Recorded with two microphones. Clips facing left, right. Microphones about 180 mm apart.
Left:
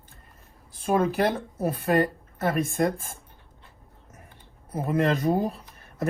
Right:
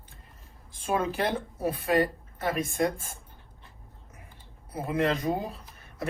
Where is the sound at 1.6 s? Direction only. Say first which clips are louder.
Left 2 dB; 50° left (ahead or behind).